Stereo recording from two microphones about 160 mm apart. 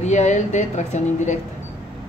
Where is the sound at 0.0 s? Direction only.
45° left (ahead or behind).